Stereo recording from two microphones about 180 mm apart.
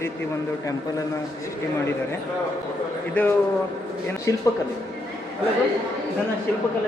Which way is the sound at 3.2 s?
10° left (ahead or behind).